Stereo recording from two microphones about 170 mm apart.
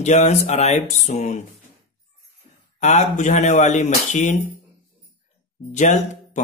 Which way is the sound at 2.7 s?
45° left (ahead or behind).